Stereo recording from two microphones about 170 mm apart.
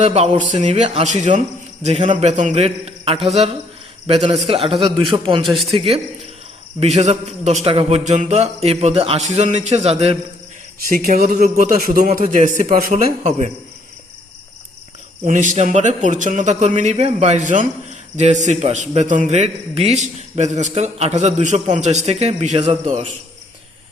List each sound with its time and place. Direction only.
0.0 s a man's voice: 40° right (ahead or behind)
5.4 s a man's voice: centre (ahead or behind)
5.7 s a man's voice: 35° right (ahead or behind)
10.9 s a man's voice: 60° right (ahead or behind)
15.2 s a man's voice: 45° right (ahead or behind)